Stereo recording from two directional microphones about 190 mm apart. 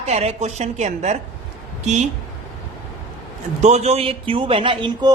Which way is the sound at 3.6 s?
35° right (ahead or behind).